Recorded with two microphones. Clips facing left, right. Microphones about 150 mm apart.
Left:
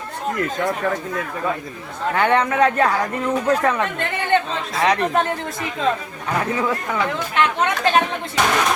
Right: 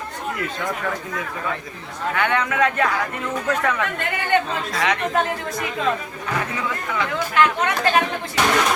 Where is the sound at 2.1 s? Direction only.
35° left (ahead or behind).